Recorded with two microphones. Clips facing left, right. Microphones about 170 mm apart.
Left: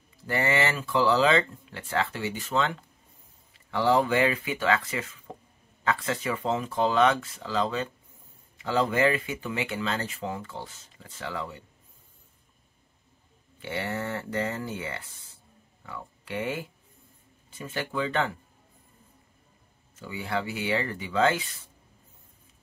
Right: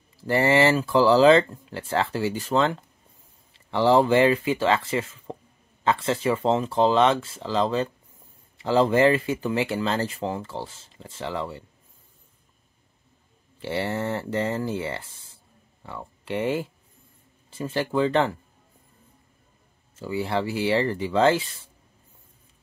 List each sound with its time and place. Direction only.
0.2 s speech: 30° right (ahead or behind)
13.6 s speech: 30° right (ahead or behind)
20.0 s speech: 30° right (ahead or behind)